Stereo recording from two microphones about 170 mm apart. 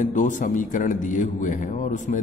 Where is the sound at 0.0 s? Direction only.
50° left (ahead or behind).